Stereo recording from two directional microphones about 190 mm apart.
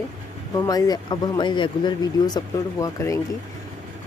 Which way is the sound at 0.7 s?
20° left (ahead or behind).